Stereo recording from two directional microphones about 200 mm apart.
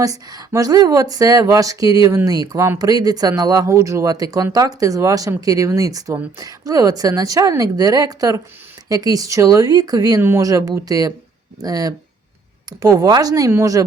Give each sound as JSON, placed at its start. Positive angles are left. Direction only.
{"t": 0.0, "sound": "speech", "side_deg": -20}